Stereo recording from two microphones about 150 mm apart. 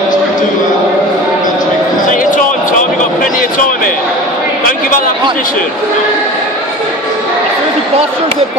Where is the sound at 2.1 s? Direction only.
65° left (ahead or behind).